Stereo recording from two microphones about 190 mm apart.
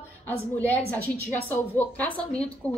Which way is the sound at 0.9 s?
55° right (ahead or behind).